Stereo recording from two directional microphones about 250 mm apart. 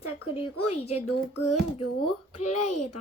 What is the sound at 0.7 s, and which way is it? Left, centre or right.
Speech, left.